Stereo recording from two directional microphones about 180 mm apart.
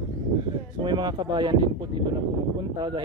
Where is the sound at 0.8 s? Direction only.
25° right (ahead or behind).